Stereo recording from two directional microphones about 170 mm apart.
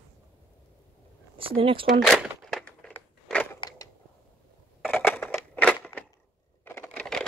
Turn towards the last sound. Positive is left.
turn(degrees=5)  # may be behind; listen again after turning